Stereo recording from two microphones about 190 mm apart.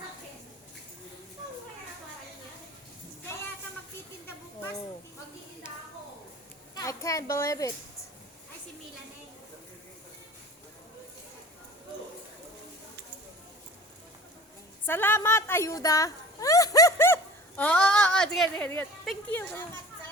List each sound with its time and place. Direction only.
6.7 s a child's voice: 15° left (ahead or behind)
14.8 s a sound: 10° left (ahead or behind)
17.6 s a child's voice: 5° left (ahead or behind)